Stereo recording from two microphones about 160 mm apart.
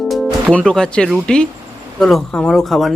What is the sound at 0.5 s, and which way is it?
Speech, 5° left (ahead or behind).